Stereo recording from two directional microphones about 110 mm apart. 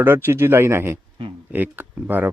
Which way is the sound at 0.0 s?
20° right (ahead or behind).